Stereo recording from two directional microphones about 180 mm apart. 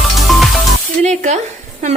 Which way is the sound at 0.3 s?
Centre (ahead or behind).